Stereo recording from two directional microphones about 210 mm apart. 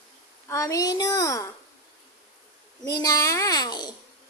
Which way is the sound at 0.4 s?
15° left (ahead or behind).